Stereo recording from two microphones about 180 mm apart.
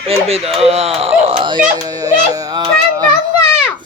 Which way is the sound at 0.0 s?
35° right (ahead or behind).